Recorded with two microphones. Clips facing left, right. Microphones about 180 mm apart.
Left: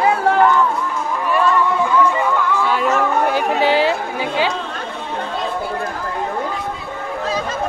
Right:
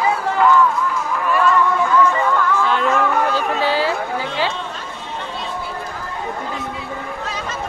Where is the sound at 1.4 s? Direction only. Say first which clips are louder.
Even; 15° left (ahead or behind).